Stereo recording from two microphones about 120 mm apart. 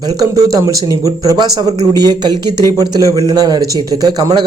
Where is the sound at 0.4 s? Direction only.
30° right (ahead or behind).